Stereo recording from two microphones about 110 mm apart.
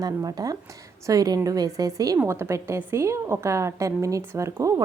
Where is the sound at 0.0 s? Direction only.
35° right (ahead or behind).